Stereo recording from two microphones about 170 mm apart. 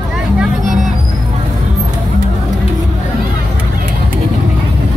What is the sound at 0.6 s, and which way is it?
Music, 45° right (ahead or behind).